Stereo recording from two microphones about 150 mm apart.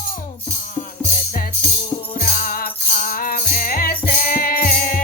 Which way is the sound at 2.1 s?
70° left (ahead or behind).